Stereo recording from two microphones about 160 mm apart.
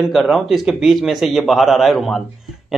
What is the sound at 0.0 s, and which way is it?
A man's voice, centre (ahead or behind).